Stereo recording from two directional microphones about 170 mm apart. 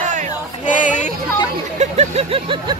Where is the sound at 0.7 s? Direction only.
50° left (ahead or behind).